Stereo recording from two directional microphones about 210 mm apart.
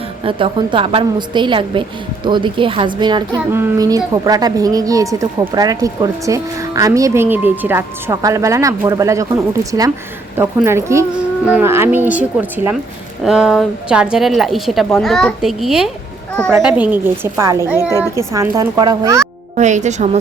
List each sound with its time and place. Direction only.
0.3 s a woman's voice: 25° right (ahead or behind)
19.5 s speech: 35° right (ahead or behind)